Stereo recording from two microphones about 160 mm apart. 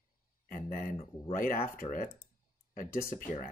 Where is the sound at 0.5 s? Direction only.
60° left (ahead or behind).